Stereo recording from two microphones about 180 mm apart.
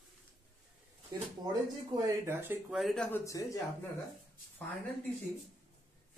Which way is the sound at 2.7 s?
Centre (ahead or behind).